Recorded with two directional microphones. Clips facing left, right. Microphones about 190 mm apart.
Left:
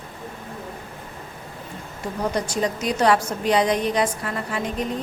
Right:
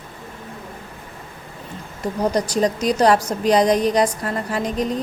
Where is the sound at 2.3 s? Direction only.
40° right (ahead or behind).